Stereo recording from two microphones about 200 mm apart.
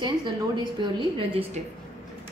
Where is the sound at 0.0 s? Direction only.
20° right (ahead or behind).